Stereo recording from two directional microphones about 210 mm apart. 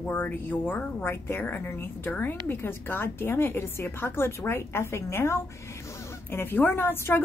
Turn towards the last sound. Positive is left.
turn(degrees=10)  # may be behind; listen again after turning